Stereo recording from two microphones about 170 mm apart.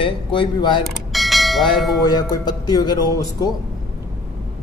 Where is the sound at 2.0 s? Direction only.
25° left (ahead or behind).